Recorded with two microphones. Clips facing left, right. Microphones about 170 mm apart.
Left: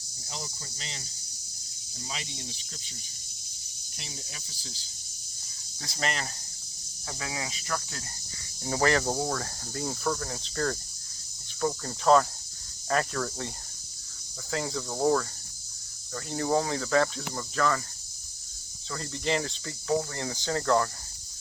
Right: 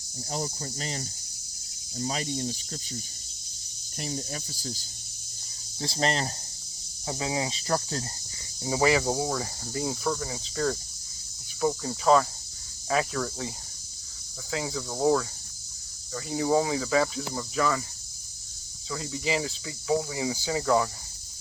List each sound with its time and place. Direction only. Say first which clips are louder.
0.3 s cricket: right 9 dB; 45° right (ahead or behind)
5.8 s speech: right 5 dB; 30° right (ahead or behind)
7.1 s cricket: right 7 dB; 25° right (ahead or behind)
8.6 s cricket: right 2 dB; 10° right (ahead or behind)
14.5 s cricket: even; centre (ahead or behind)
18.9 s speech: even; 5° right (ahead or behind)